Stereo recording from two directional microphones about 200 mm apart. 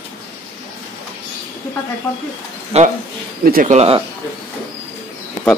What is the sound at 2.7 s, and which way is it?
Speech, 30° right (ahead or behind).